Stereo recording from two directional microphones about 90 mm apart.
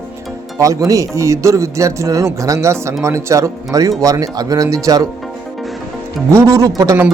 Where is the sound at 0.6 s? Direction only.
40° right (ahead or behind).